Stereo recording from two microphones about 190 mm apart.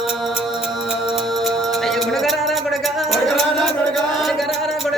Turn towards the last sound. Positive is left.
turn(degrees=0)  # may be behind; listen again after turning